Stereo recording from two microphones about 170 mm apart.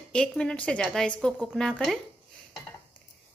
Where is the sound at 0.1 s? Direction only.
5° left (ahead or behind).